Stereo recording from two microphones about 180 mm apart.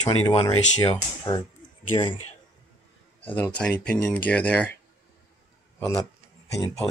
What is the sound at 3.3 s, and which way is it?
Speech, 10° left (ahead or behind).